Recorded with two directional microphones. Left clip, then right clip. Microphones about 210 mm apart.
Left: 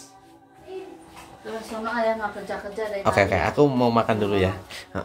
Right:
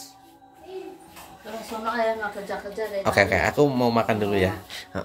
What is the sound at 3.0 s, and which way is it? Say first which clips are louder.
Speech: even; centre (ahead or behind).